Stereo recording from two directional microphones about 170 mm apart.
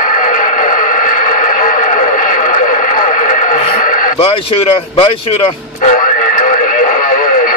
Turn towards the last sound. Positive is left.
turn(degrees=55)  # may be behind; listen again after turning